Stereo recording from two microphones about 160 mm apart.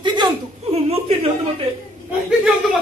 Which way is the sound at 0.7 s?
40° right (ahead or behind).